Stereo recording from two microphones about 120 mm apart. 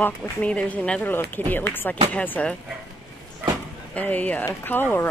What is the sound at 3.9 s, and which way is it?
Speech, 10° left (ahead or behind).